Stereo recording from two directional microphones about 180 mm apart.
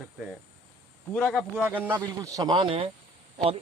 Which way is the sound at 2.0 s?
20° right (ahead or behind).